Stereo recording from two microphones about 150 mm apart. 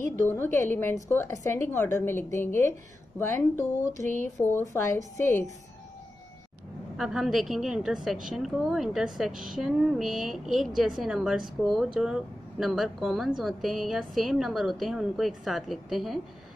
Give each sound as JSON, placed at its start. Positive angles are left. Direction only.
{"t": 0.1, "sound": "a woman's voice", "side_deg": 15}
{"t": 7.0, "sound": "a woman's voice", "side_deg": -5}